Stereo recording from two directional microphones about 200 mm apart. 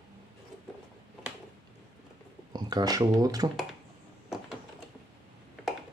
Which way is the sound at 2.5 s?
20° right (ahead or behind).